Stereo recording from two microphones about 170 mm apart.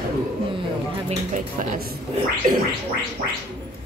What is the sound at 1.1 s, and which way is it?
Speech, 50° right (ahead or behind).